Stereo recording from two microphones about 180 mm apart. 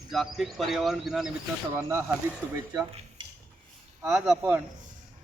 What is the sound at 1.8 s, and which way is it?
Speech, 15° right (ahead or behind).